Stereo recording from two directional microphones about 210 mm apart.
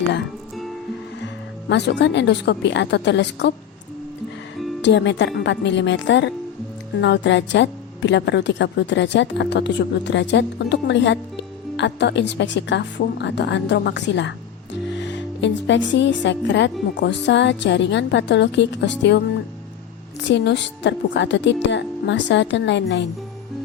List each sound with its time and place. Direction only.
1.6 s a woman's voice: 55° left (ahead or behind)
4.8 s a woman's voice: 55° left (ahead or behind)
20.2 s a woman's voice: 55° left (ahead or behind)